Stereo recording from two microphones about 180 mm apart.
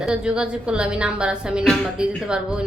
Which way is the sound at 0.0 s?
5° right (ahead or behind).